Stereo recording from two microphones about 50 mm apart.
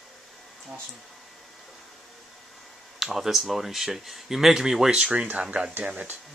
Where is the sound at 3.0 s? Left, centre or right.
Centre; by 5.7 s right.